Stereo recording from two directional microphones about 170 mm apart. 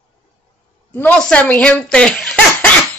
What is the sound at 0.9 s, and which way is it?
Speech, 10° left (ahead or behind).